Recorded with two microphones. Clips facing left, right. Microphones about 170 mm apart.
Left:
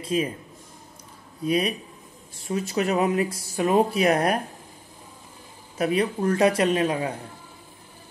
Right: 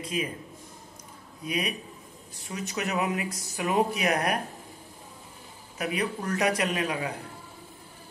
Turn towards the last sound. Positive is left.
turn(degrees=30)  # may be behind; listen again after turning